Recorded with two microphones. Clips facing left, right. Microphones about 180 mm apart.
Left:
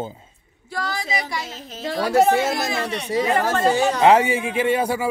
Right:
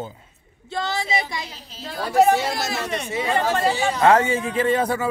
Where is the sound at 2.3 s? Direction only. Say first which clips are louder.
Left 3 dB; 50° left (ahead or behind).